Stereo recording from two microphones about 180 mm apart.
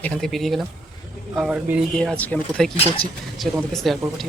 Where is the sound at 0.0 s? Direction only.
5° left (ahead or behind).